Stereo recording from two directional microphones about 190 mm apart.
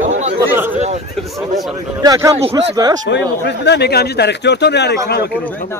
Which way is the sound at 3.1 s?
65° left (ahead or behind).